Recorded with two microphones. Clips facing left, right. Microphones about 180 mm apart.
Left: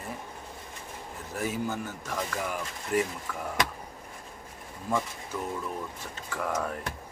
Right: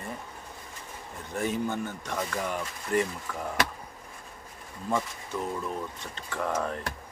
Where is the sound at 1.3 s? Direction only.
5° left (ahead or behind).